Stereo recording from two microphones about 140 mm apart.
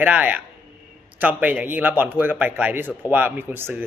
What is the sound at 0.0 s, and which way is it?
Speech, 10° right (ahead or behind).